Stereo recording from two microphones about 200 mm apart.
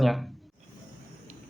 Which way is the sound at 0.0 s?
Centre (ahead or behind).